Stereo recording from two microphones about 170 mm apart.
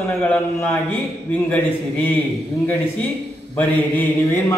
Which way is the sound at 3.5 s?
10° left (ahead or behind).